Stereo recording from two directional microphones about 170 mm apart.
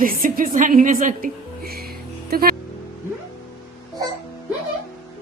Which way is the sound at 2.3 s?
60° right (ahead or behind).